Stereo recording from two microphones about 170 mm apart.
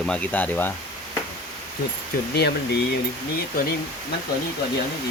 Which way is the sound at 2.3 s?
75° left (ahead or behind).